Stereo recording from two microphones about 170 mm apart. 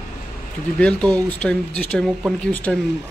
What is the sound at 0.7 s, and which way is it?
Speech, 5° left (ahead or behind).